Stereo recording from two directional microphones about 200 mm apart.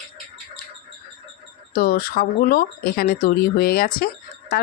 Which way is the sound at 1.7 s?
45° left (ahead or behind).